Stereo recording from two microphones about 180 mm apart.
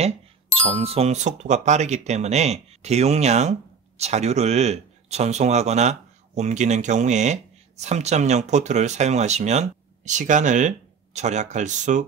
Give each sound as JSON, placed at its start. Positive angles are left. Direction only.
{"t": 0.6, "sound": "speech", "side_deg": -35}